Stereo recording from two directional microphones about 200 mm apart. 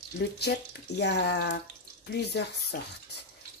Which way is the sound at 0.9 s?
60° left (ahead or behind).